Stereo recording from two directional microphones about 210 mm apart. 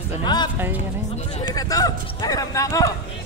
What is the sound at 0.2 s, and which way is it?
Speech, 20° left (ahead or behind).